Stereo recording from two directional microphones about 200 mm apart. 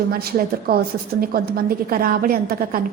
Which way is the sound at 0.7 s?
50° right (ahead or behind).